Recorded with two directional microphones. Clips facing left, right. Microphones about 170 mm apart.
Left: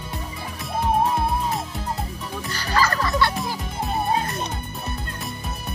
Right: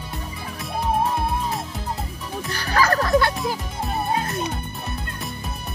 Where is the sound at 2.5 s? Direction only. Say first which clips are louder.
Right 2 dB; 55° right (ahead or behind).